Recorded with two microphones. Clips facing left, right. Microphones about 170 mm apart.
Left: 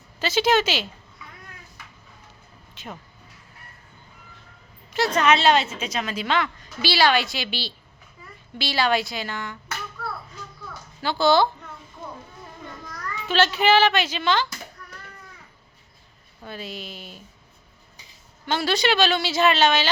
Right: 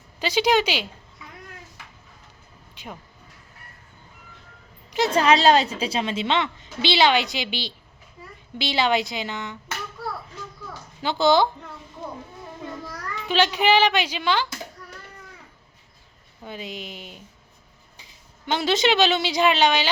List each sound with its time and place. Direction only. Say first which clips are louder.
0.2 s speech: even; 15° right (ahead or behind)
2.7 s a sound: left 1 dB; 10° right (ahead or behind)
4.9 s a woman's voice: right 1 dB; 20° right (ahead or behind)
5.1 s a woman's voice: right 2 dB; 35° right (ahead or behind)
11.0 s a woman's voice: even; 20° right (ahead or behind)
13.2 s speech: even; 15° right (ahead or behind)
16.4 s speech: right 1 dB; 15° right (ahead or behind)
18.4 s speech: right 1 dB; 20° right (ahead or behind)